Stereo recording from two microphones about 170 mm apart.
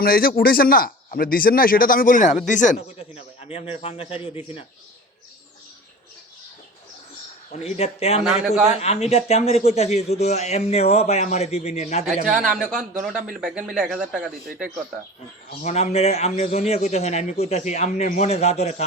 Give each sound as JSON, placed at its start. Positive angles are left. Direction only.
{"t": 0.0, "sound": "a man's voice", "side_deg": 60}
{"t": 7.6, "sound": "a man's voice", "side_deg": 40}
{"t": 8.2, "sound": "a man's voice", "side_deg": -5}
{"t": 8.8, "sound": "a man's voice", "side_deg": 40}
{"t": 12.0, "sound": "a man's voice", "side_deg": 0}
{"t": 15.6, "sound": "a man's voice", "side_deg": 40}